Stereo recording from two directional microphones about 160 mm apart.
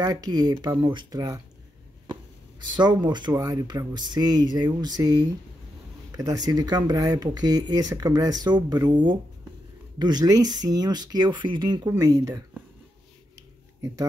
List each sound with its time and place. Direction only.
0.0 s speech: 25° right (ahead or behind)
2.7 s speech: 25° right (ahead or behind)
13.7 s speech: 20° right (ahead or behind)